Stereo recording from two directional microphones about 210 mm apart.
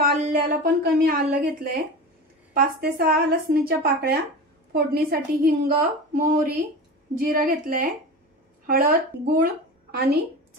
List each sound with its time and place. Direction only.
0.0 s a woman's voice: 45° right (ahead or behind)